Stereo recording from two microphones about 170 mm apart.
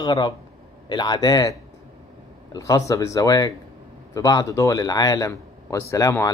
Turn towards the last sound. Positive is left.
turn(degrees=20)  # may be behind; listen again after turning